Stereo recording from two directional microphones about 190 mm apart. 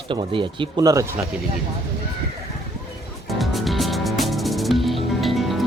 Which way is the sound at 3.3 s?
Centre (ahead or behind).